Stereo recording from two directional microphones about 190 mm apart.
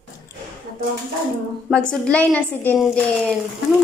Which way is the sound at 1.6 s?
5° left (ahead or behind).